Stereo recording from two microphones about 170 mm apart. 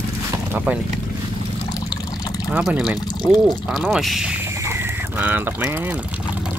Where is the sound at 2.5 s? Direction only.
5° right (ahead or behind).